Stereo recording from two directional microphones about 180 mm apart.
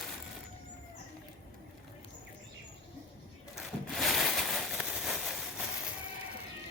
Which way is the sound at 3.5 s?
Centre (ahead or behind).